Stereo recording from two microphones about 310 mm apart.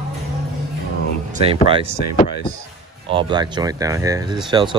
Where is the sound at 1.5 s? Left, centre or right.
Centre.